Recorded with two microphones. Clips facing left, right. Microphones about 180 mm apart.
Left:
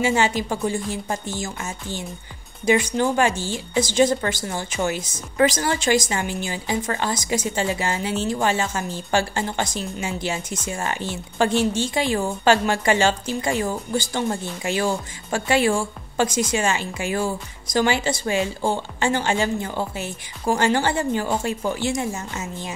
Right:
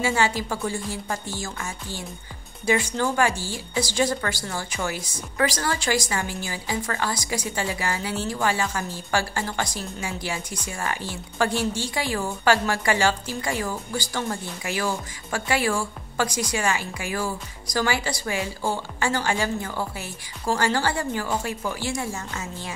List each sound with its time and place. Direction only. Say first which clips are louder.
0.0 s a woman's voice: left 3 dB; 20° left (ahead or behind)